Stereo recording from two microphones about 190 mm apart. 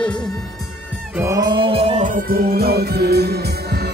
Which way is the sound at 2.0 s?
55° right (ahead or behind).